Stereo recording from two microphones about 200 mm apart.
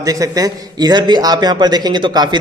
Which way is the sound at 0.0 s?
20° right (ahead or behind).